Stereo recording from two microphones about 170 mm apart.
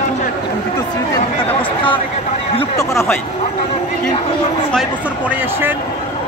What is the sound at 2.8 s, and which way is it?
Speech, 15° left (ahead or behind).